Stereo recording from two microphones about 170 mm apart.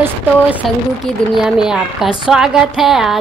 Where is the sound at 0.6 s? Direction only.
Centre (ahead or behind).